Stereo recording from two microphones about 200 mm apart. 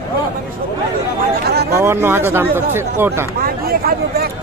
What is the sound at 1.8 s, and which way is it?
Speech, 10° right (ahead or behind).